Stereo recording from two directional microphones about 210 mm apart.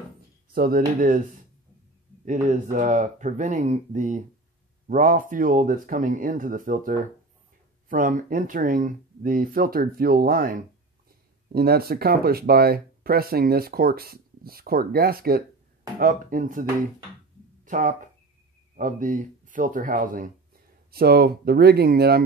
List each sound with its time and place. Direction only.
0.5 s speech: 45° right (ahead or behind)
2.2 s speech: 35° right (ahead or behind)
17.6 s speech: 40° right (ahead or behind)